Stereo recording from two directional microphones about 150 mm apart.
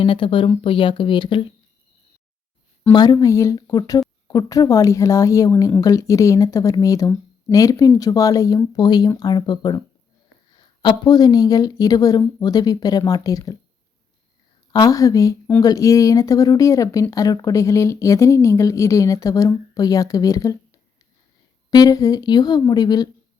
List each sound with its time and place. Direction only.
0.0 s speech: 35° left (ahead or behind)
2.9 s speech: 30° left (ahead or behind)
14.7 s speech: 25° left (ahead or behind)
21.7 s speech: 25° left (ahead or behind)